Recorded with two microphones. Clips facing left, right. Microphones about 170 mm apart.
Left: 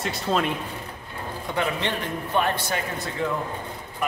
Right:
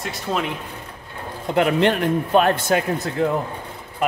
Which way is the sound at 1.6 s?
70° right (ahead or behind).